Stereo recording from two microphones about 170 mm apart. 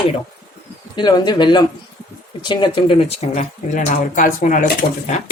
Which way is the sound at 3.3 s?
45° left (ahead or behind).